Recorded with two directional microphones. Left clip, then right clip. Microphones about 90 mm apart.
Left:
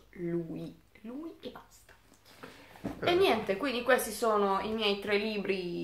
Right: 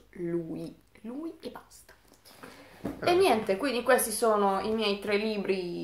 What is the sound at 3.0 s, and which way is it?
A woman's voice, 35° right (ahead or behind).